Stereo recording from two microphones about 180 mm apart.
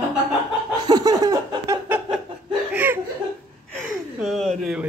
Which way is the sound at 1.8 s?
10° right (ahead or behind).